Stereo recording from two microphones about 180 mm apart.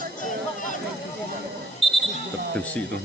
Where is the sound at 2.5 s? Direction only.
10° left (ahead or behind).